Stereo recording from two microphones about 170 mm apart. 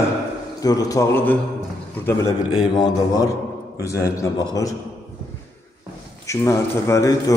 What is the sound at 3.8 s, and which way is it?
Speech, 20° left (ahead or behind).